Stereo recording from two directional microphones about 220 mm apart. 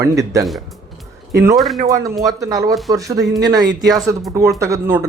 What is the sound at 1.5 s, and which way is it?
Speech, centre (ahead or behind).